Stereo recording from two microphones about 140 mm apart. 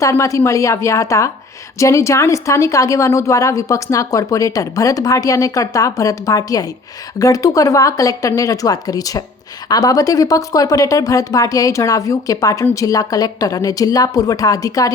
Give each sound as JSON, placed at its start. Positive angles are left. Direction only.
{"t": 0.0, "sound": "a woman's voice", "side_deg": 20}